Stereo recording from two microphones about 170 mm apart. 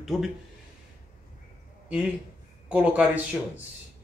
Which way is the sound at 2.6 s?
10° right (ahead or behind).